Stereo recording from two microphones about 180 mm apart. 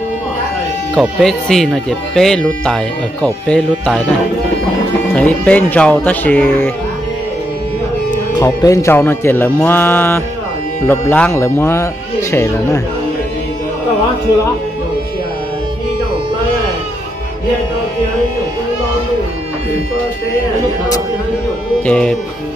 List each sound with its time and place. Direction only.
0.9 s speech: centre (ahead or behind)
5.1 s music: 10° left (ahead or behind)
8.4 s music: 20° left (ahead or behind)
21.8 s speech: 5° left (ahead or behind)